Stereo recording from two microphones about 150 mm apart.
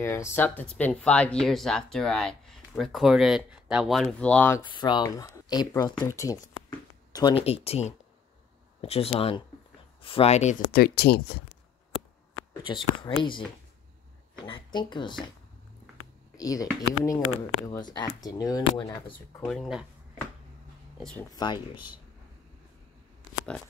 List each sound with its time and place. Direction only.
0.3 s speech: 10° left (ahead or behind)
4.6 s speech: 30° left (ahead or behind)
7.1 s a sound: 25° left (ahead or behind)
7.3 s speech: 40° left (ahead or behind)
10.7 s speech: 90° left
12.6 s speech: 30° left (ahead or behind)
14.5 s speech: 30° left (ahead or behind)
16.3 s speech: 25° left (ahead or behind)
19.4 s speech: centre (ahead or behind)
21.0 s speech: 5° left (ahead or behind)
21.3 s speech: 30° left (ahead or behind)